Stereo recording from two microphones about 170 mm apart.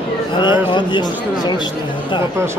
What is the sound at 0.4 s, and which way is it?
Speech, 25° left (ahead or behind).